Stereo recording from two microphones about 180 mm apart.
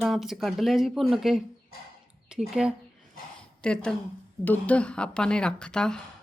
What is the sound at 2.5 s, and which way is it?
A woman's voice, 5° right (ahead or behind).